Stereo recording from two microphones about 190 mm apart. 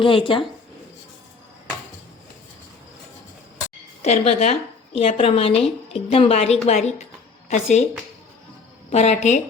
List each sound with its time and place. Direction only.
0.0 s a woman's voice: 25° left (ahead or behind)
4.0 s a woman's voice: 35° left (ahead or behind)
8.9 s a woman's voice: 35° left (ahead or behind)